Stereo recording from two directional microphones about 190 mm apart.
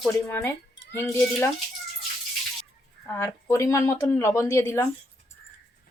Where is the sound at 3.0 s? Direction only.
15° left (ahead or behind).